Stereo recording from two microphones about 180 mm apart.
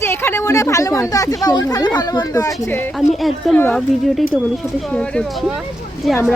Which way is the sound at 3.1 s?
Centre (ahead or behind).